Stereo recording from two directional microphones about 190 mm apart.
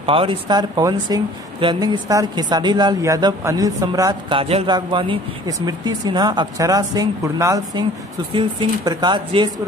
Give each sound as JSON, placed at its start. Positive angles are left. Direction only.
{"t": 0.0, "sound": "speech", "side_deg": -30}
{"t": 8.3, "sound": "speech", "side_deg": -25}